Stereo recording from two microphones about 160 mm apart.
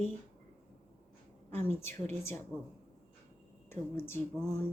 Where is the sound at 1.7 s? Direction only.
15° left (ahead or behind).